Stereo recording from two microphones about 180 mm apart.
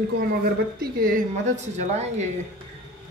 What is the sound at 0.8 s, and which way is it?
A woman's voice, 55° right (ahead or behind).